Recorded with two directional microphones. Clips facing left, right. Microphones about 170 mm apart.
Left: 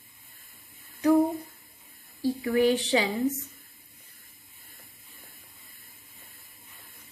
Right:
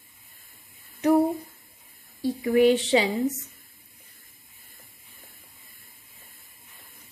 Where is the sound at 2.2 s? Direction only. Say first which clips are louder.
Right 4 dB; 20° right (ahead or behind).